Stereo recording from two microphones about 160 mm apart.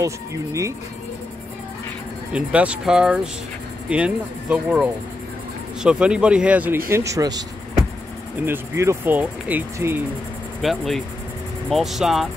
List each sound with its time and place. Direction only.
0.0 s speech: 20° right (ahead or behind)
2.3 s speech: 10° right (ahead or behind)
10.6 s speech: centre (ahead or behind)